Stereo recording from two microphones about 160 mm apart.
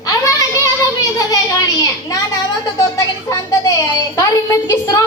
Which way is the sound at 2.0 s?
20° left (ahead or behind).